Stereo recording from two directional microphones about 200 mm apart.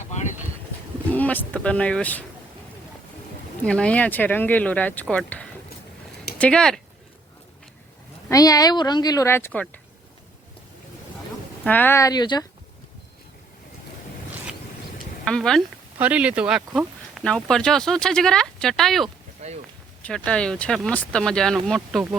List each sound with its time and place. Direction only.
1.1 s speech: 10° left (ahead or behind)
3.7 s speech: 5° left (ahead or behind)
8.3 s speech: 20° left (ahead or behind)
11.6 s speech: 10° left (ahead or behind)
15.2 s speech: 5° left (ahead or behind)
19.4 s speech: 35° right (ahead or behind)
20.0 s speech: 5° left (ahead or behind)